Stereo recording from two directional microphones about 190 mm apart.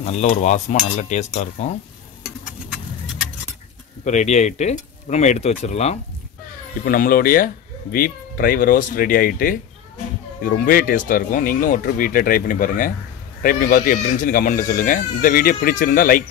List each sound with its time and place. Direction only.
0.0 s speech: 35° left (ahead or behind)
4.0 s speech: 40° left (ahead or behind)
6.8 s speech: 50° left (ahead or behind)